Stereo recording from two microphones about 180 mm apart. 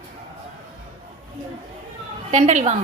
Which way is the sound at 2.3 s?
45° right (ahead or behind).